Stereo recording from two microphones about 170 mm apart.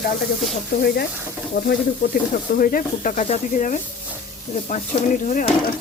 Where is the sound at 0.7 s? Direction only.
65° left (ahead or behind).